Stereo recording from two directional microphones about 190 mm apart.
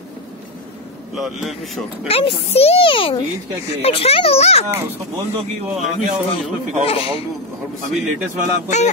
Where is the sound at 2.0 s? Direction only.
30° left (ahead or behind).